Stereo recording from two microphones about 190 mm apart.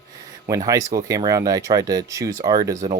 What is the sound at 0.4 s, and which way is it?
Speech, 15° right (ahead or behind).